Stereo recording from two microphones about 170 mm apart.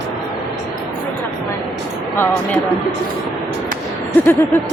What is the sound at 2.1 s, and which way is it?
Speech, 15° left (ahead or behind).